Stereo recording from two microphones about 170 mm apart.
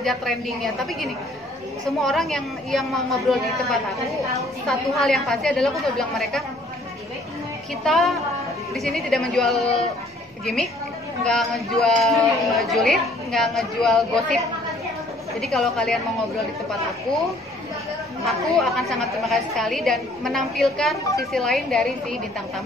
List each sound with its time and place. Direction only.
0.0 s speech: centre (ahead or behind)
7.8 s speech: centre (ahead or behind)
15.4 s speech: centre (ahead or behind)
18.2 s speech: centre (ahead or behind)